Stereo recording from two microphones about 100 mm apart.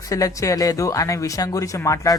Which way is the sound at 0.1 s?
35° left (ahead or behind).